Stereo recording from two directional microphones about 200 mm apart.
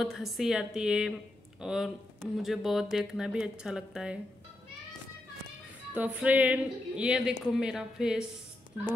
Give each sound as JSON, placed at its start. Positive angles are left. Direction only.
{"t": 0.0, "sound": "a woman's voice", "side_deg": 0}
{"t": 5.9, "sound": "a woman's voice", "side_deg": -5}